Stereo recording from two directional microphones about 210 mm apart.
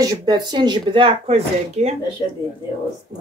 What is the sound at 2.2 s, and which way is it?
Speech, 20° left (ahead or behind).